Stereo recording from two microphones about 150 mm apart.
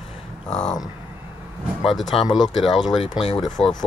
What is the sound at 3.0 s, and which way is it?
Speech, 35° left (ahead or behind).